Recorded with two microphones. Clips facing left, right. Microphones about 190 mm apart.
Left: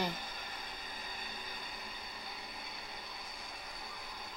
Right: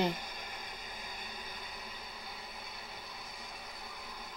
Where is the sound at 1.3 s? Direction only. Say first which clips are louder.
Even; 5° right (ahead or behind).